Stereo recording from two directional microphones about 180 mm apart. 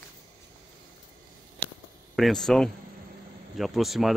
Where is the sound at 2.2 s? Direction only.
Centre (ahead or behind).